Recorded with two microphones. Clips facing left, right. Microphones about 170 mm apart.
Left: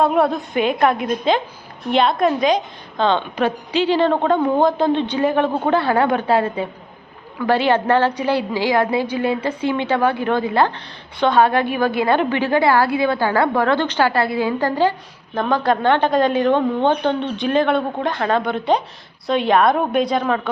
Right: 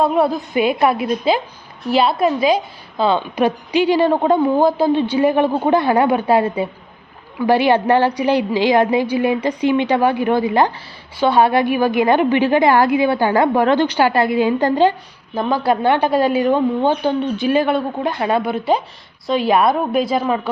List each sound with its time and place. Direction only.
0.0 s a woman's voice: centre (ahead or behind); by 14.9 s 20° right (ahead or behind)
15.4 s a woman's voice: 5° right (ahead or behind)